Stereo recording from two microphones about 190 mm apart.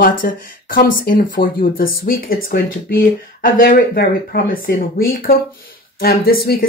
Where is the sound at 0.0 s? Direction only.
45° left (ahead or behind).